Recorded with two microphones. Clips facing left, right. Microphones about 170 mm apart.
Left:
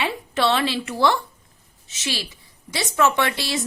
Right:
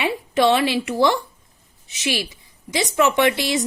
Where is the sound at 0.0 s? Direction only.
15° right (ahead or behind).